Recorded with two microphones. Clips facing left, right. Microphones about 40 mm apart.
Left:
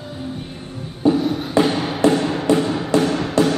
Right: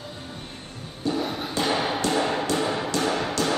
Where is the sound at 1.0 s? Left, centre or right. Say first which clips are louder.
Left 10 dB; left.